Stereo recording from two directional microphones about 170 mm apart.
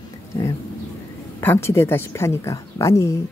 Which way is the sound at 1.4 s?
15° left (ahead or behind).